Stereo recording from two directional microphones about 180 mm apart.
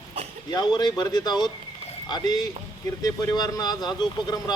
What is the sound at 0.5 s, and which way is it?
A man's voice, 25° left (ahead or behind).